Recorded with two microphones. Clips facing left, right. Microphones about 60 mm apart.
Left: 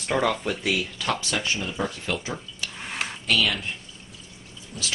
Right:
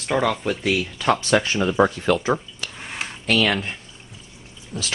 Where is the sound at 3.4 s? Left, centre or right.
Right.